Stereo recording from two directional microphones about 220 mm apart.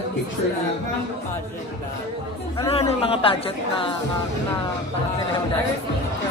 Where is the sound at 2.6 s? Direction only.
25° left (ahead or behind).